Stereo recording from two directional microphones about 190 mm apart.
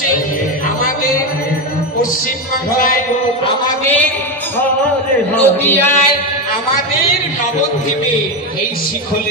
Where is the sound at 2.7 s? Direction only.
45° left (ahead or behind).